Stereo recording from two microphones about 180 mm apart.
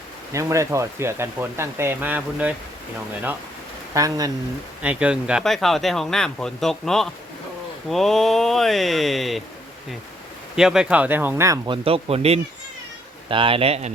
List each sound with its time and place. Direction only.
0.3 s speech: 15° right (ahead or behind)
3.9 s speech: 20° right (ahead or behind)
4.8 s speech: 5° right (ahead or behind)
10.5 s speech: 5° right (ahead or behind); by 13.9 s 35° right (ahead or behind)